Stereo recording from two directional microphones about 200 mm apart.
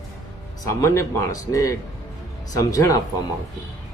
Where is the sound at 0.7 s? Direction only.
15° left (ahead or behind).